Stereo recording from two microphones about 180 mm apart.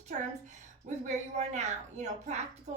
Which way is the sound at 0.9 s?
40° right (ahead or behind).